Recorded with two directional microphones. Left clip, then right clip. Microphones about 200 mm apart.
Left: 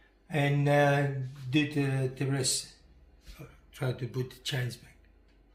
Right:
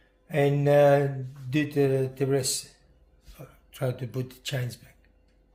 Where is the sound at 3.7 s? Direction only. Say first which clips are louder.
Right 4 dB; 60° right (ahead or behind).